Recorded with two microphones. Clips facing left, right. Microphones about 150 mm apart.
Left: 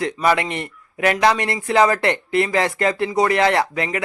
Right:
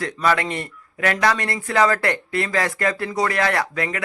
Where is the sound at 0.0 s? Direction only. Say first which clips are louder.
Left 2 dB; 20° left (ahead or behind).